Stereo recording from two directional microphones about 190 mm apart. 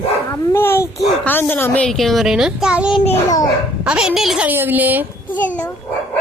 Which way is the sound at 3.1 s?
20° left (ahead or behind).